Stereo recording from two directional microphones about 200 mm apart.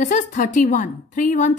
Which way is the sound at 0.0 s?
40° left (ahead or behind).